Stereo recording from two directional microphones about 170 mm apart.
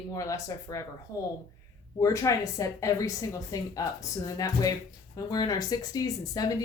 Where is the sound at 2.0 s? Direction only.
20° left (ahead or behind).